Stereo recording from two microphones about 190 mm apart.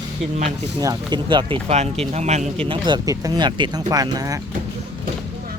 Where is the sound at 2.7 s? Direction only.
25° right (ahead or behind).